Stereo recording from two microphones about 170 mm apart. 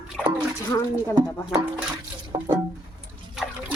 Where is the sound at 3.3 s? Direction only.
Centre (ahead or behind).